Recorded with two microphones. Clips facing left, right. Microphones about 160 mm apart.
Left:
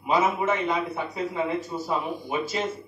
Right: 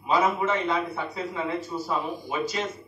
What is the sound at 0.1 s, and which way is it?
A man's voice, 20° left (ahead or behind).